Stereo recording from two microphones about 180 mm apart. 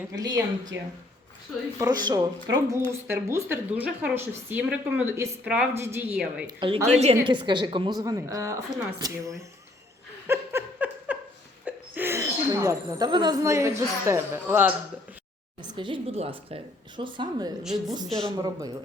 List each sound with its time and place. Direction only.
0.2 s a woman's voice: 20° right (ahead or behind)
1.8 s a woman's voice: 20° right (ahead or behind); by 6.4 s 5° right (ahead or behind)
6.6 s a woman's voice: 30° right (ahead or behind)
10.2 s a sound: 15° right (ahead or behind)
11.6 s speech: 10° right (ahead or behind)
15.6 s a woman's voice: 25° right (ahead or behind)